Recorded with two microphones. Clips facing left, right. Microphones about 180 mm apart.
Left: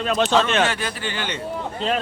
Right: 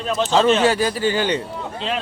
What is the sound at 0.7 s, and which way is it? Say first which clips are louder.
Speech: right 9 dB; 35° right (ahead or behind).